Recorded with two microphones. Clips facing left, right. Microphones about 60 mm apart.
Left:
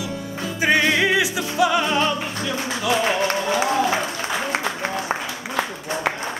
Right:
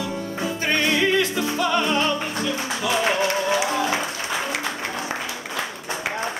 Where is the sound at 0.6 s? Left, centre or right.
Centre.